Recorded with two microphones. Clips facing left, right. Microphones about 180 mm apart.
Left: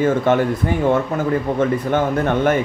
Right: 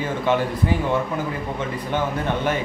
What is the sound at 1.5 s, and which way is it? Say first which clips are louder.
A man's voice: left 5 dB; 50° left (ahead or behind).